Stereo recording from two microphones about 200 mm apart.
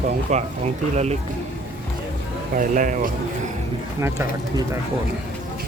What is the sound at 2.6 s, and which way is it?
Speech, 40° right (ahead or behind).